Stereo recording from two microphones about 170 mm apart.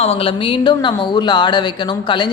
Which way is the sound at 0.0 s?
35° left (ahead or behind).